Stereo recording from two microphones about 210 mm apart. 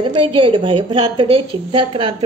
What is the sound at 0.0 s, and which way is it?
A woman's voice, 25° right (ahead or behind).